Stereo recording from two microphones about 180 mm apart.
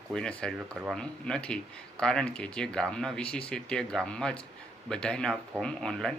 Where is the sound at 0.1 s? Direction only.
5° left (ahead or behind).